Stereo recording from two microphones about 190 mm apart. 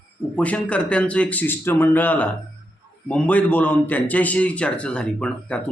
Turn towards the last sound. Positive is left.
turn(degrees=5)  # may be behind; listen again after turning